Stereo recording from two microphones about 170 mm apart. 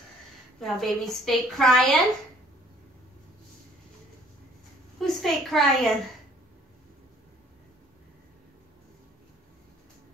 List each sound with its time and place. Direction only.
0.6 s a woman's voice: centre (ahead or behind)
5.0 s a woman's voice: centre (ahead or behind)